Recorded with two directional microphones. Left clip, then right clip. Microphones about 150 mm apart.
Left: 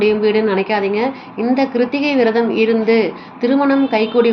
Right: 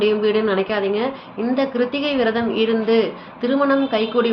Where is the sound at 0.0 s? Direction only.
15° left (ahead or behind).